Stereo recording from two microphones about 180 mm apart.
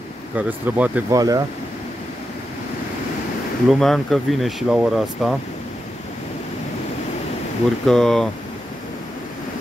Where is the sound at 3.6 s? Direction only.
Centre (ahead or behind).